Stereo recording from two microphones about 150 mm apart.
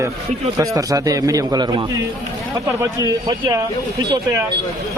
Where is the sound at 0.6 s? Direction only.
20° right (ahead or behind).